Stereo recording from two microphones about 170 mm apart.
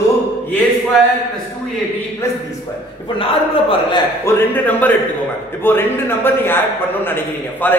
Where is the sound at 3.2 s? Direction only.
30° left (ahead or behind).